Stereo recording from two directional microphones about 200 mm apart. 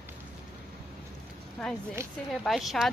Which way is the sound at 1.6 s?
5° left (ahead or behind).